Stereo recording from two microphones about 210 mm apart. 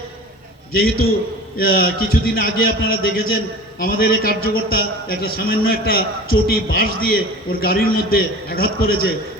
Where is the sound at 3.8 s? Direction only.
45° left (ahead or behind).